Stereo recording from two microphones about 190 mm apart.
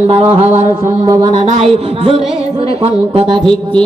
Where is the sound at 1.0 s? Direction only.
25° right (ahead or behind).